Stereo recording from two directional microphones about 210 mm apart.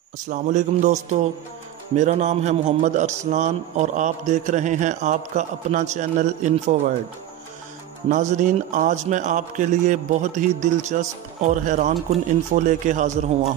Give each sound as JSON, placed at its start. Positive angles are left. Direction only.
{"t": 0.3, "sound": "a man's voice", "side_deg": -35}
{"t": 2.0, "sound": "a man's voice", "side_deg": -35}
{"t": 8.1, "sound": "a man's voice", "side_deg": -35}